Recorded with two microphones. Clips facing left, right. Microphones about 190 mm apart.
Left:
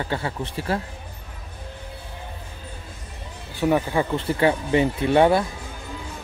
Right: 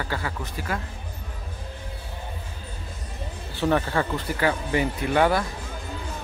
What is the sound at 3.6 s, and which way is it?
Speech, 10° left (ahead or behind).